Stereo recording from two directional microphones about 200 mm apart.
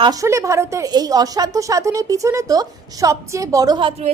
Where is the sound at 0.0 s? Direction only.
15° right (ahead or behind).